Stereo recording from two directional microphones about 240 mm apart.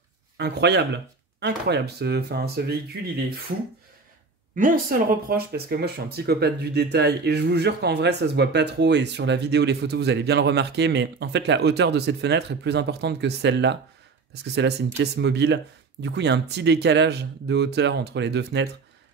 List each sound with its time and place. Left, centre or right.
0.4 s speech: right
4.6 s speech: right